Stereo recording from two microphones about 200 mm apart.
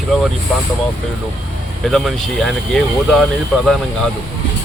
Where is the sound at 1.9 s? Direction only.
Centre (ahead or behind).